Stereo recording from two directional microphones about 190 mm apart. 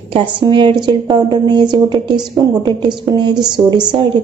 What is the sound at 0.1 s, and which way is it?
A woman's voice, 25° right (ahead or behind).